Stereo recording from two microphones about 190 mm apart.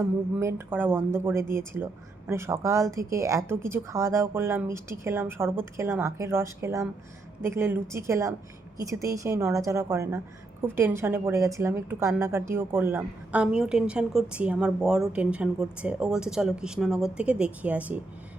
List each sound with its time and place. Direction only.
0.0 s a woman's voice: 15° right (ahead or behind)